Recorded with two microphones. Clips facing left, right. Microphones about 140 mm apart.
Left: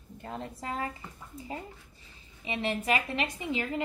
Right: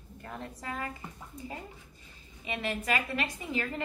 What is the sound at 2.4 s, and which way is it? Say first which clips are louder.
A woman's voice: left 3 dB; 25° left (ahead or behind).